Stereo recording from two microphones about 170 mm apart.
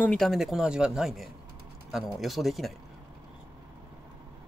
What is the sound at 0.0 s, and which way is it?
Speech, 5° left (ahead or behind).